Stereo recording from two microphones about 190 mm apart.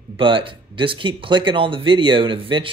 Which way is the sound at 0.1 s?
25° right (ahead or behind).